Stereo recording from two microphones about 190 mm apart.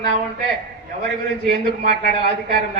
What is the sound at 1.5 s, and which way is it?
Speech, 55° right (ahead or behind).